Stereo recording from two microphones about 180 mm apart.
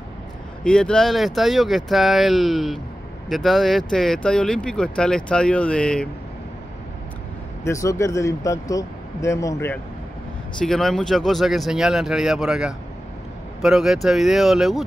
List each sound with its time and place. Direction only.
0.7 s speech: 5° left (ahead or behind)
7.6 s speech: 15° left (ahead or behind)
10.6 s speech: centre (ahead or behind)